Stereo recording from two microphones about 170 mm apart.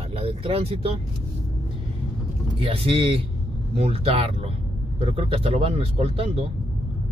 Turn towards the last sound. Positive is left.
turn(degrees=-35)  # may be behind; listen again after turning